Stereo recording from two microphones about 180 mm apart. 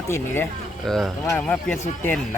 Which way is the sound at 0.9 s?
Centre (ahead or behind).